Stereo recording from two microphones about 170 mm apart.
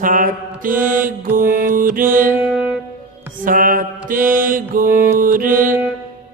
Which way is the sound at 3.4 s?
55° right (ahead or behind).